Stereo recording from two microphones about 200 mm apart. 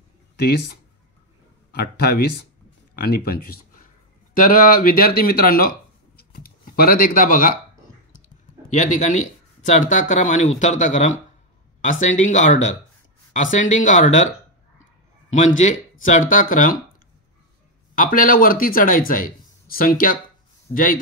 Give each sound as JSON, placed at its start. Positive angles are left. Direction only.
{"t": 0.4, "sound": "speech", "side_deg": 55}
{"t": 6.1, "sound": "a sound", "side_deg": 50}
{"t": 8.7, "sound": "speech", "side_deg": 35}
{"t": 15.3, "sound": "speech", "side_deg": 40}
{"t": 17.9, "sound": "speech", "side_deg": 40}